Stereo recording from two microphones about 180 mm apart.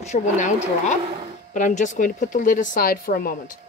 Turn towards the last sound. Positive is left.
turn(degrees=55)  # may be behind; listen again after turning